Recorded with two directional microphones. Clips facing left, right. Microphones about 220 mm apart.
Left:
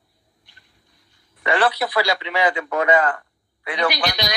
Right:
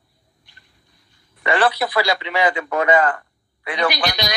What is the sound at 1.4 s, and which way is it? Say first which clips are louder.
A man's voice: right 1 dB; 50° right (ahead or behind).